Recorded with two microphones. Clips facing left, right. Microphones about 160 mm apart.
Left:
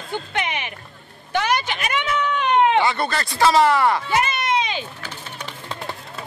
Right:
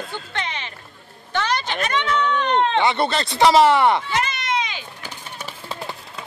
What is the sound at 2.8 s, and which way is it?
Speech, 20° right (ahead or behind).